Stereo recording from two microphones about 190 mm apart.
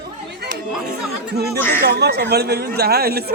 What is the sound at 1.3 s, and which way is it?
Speech, 60° right (ahead or behind).